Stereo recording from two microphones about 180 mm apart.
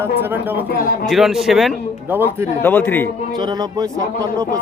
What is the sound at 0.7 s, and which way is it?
Speech, 55° left (ahead or behind).